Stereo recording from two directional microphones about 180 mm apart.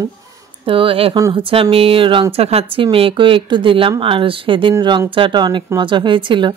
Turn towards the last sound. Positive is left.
turn(degrees=-25)  # may be behind; listen again after turning